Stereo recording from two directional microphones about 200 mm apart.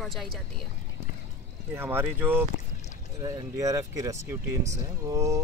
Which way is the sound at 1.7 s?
10° right (ahead or behind).